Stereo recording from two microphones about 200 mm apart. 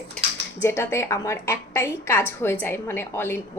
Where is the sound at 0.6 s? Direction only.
10° left (ahead or behind).